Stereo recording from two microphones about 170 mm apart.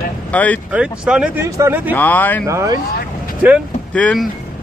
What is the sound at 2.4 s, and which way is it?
Speech, 15° right (ahead or behind).